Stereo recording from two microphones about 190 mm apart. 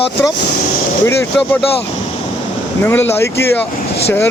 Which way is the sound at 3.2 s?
15° left (ahead or behind).